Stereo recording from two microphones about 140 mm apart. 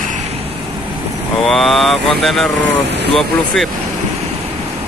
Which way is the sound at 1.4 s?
Centre (ahead or behind).